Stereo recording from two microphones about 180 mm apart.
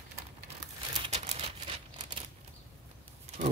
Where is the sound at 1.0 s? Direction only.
30° right (ahead or behind).